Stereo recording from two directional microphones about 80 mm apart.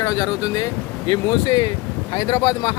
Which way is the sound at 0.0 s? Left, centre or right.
Left.